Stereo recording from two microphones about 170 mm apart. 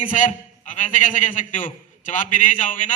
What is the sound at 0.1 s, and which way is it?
A man's voice, 45° left (ahead or behind).